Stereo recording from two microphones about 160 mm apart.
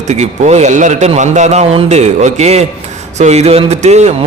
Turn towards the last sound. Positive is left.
turn(degrees=-45)  # may be behind; listen again after turning